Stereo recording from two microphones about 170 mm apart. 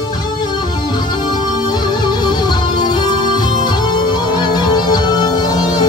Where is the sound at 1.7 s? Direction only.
25° left (ahead or behind).